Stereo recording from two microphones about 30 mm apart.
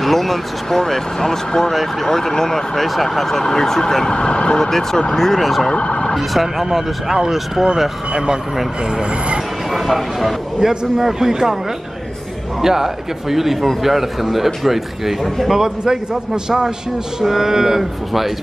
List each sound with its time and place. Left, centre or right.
0.0 s speech: centre; by 4.6 s left
4.6 s speech: centre
5.8 s emergency vehicle: left
6.1 s a man's voice: centre
9.7 s speech: centre
10.6 s a man's voice: centre
12.6 s a man's voice: centre
15.2 s speech: centre
15.5 s a man's voice: centre
17.2 s a man's voice: centre